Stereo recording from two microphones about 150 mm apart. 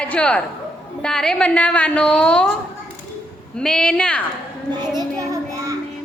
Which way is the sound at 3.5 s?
5° left (ahead or behind).